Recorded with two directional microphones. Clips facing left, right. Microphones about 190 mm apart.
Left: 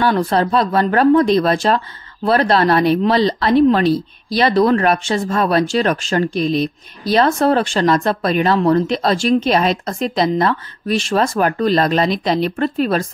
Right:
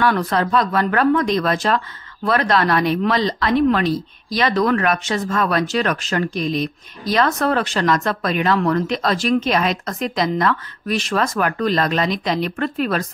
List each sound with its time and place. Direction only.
0.0 s speech: 30° left (ahead or behind)